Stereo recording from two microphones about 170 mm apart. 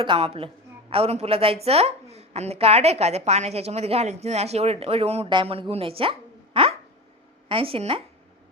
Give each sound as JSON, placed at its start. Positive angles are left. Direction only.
{"t": 0.0, "sound": "a woman's voice", "side_deg": -30}
{"t": 6.0, "sound": "a sound", "side_deg": -30}
{"t": 7.4, "sound": "speech", "side_deg": -35}